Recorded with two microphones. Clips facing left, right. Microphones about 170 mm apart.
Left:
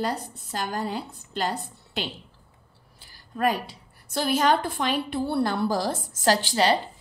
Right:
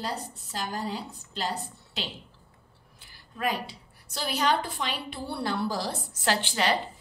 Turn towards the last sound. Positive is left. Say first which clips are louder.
# left 5 dB
turn(degrees=35)  # may be behind; listen again after turning